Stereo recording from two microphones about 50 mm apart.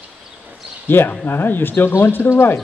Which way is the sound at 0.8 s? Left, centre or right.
Left.